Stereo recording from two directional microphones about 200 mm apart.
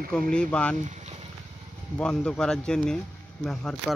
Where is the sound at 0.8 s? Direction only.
35° right (ahead or behind).